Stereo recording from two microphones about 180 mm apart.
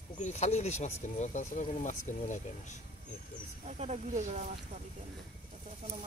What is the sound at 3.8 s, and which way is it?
Speech, 35° right (ahead or behind).